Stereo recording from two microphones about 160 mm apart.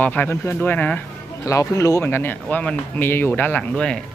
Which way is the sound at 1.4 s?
20° left (ahead or behind).